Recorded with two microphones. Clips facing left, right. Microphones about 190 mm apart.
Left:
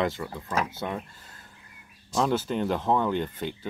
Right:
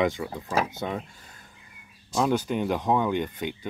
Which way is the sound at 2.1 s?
5° right (ahead or behind).